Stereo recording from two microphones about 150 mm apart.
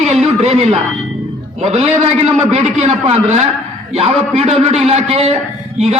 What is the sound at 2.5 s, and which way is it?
A man's voice, 45° right (ahead or behind).